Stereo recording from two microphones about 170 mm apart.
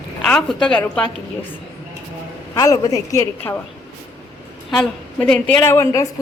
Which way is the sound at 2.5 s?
20° left (ahead or behind).